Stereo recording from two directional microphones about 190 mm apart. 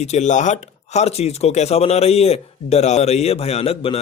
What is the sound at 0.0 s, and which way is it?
Speech, 35° left (ahead or behind).